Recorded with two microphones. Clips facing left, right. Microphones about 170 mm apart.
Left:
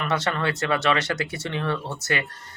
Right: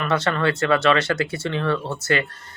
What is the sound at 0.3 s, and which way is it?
Speech, 15° left (ahead or behind).